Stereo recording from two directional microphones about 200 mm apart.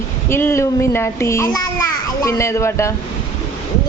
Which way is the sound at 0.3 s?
10° left (ahead or behind).